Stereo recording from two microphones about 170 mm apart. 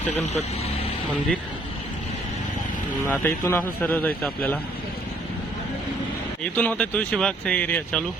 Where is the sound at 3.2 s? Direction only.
15° left (ahead or behind).